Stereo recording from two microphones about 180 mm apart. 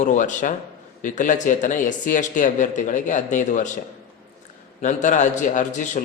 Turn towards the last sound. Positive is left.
turn(degrees=45)  # may be behind; listen again after turning